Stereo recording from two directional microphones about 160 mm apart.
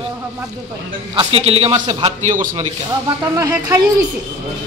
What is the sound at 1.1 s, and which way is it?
A man's voice, 35° right (ahead or behind).